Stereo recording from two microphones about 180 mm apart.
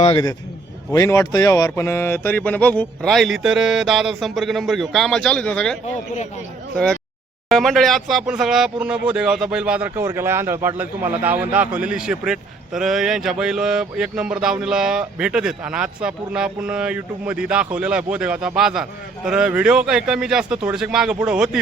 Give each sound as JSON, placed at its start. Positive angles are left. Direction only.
{"t": 0.0, "sound": "a man's voice", "side_deg": 25}
{"t": 0.9, "sound": "speech", "side_deg": 15}